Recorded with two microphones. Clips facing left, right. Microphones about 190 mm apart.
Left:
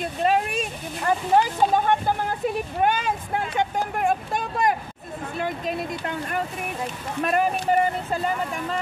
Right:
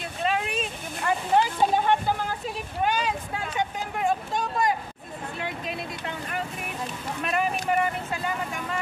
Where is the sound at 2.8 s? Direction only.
50° left (ahead or behind).